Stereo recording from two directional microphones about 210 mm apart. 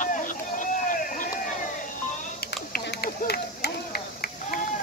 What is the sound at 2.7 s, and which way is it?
Run, 50° left (ahead or behind).